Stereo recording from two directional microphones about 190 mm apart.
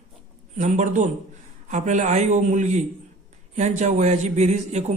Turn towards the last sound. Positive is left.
turn(degrees=-35)  # may be behind; listen again after turning